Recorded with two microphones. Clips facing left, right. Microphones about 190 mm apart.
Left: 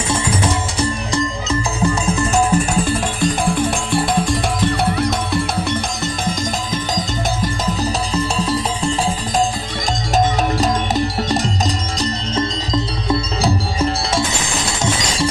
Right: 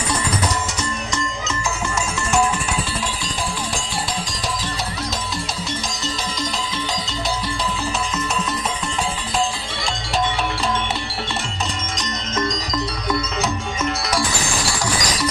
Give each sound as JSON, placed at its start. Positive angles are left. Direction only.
{"t": 0.7, "sound": "music", "side_deg": 35}
{"t": 7.6, "sound": "music", "side_deg": 35}
{"t": 10.1, "sound": "music", "side_deg": 40}
{"t": 12.0, "sound": "music", "side_deg": 30}
{"t": 14.6, "sound": "shatter", "side_deg": 25}